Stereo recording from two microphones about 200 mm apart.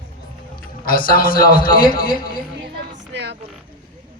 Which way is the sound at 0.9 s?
45° left (ahead or behind).